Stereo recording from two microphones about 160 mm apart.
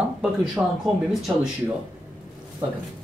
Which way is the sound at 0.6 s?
5° right (ahead or behind).